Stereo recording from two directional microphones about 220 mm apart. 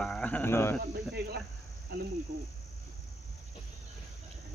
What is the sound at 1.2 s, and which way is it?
Speech, 45° right (ahead or behind).